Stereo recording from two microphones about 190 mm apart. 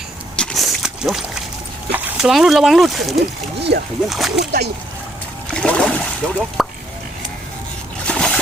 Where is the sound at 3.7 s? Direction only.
55° right (ahead or behind).